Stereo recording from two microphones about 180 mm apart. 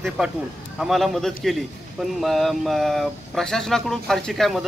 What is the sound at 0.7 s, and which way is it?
Speech, centre (ahead or behind).